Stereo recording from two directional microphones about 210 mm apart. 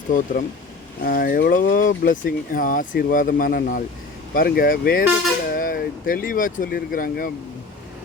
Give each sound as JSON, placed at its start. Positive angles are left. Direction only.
{"t": 0.1, "sound": "speech", "side_deg": 40}